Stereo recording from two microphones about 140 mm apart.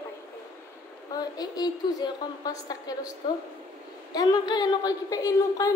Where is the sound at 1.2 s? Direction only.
30° left (ahead or behind).